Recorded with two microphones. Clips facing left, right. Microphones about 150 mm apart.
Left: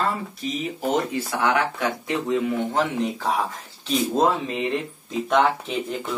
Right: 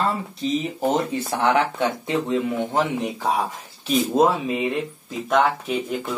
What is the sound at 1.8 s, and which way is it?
Speech, 20° right (ahead or behind).